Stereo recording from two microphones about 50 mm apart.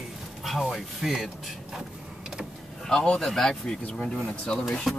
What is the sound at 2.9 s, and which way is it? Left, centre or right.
Speech, centre.